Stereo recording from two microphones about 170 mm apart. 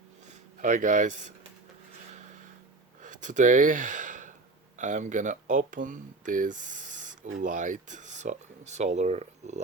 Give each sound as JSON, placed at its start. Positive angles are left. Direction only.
{"t": 0.3, "sound": "speech", "side_deg": -50}
{"t": 3.0, "sound": "gasp", "side_deg": -50}
{"t": 4.8, "sound": "speech", "side_deg": -45}